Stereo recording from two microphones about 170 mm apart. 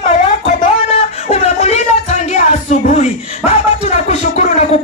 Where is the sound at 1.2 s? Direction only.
40° left (ahead or behind).